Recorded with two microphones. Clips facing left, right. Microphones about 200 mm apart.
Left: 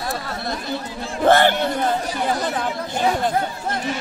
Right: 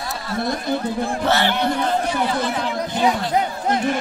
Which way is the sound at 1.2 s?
50° left (ahead or behind).